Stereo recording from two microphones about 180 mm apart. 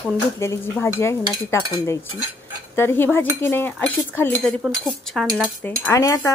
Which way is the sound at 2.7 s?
15° left (ahead or behind).